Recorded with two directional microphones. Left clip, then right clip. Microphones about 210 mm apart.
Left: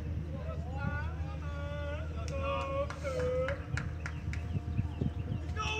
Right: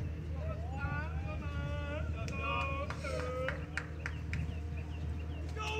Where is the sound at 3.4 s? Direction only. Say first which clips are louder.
Left 1 dB; 50° left (ahead or behind).